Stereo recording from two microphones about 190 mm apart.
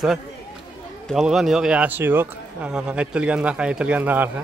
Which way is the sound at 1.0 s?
Centre (ahead or behind).